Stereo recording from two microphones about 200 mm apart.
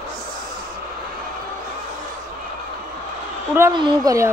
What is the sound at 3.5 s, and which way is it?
Speech, 20° right (ahead or behind).